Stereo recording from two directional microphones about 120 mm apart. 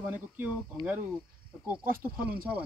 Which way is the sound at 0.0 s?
15° right (ahead or behind).